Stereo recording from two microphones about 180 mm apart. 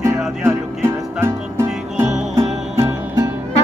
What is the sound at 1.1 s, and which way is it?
Music, 15° right (ahead or behind).